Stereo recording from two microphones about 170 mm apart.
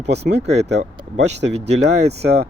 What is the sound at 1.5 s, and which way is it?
Speech, 40° right (ahead or behind).